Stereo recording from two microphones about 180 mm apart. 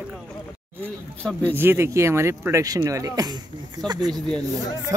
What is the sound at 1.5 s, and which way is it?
Speech, 10° right (ahead or behind).